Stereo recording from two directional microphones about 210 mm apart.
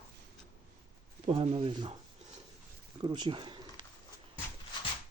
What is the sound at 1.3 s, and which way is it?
Speech, 30° right (ahead or behind).